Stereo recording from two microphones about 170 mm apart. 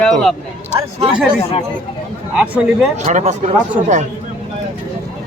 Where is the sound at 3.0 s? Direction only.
45° right (ahead or behind).